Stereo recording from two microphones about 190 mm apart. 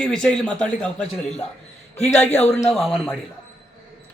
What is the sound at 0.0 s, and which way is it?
Speech, 5° left (ahead or behind).